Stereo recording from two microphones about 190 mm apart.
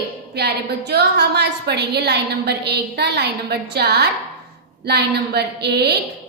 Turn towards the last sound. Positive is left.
turn(degrees=-60)  # may be behind; listen again after turning